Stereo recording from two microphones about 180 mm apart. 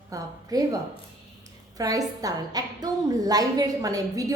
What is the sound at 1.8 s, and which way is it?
A woman's voice, 20° right (ahead or behind).